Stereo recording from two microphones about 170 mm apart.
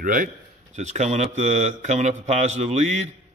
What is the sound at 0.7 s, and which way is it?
Speech, 45° right (ahead or behind).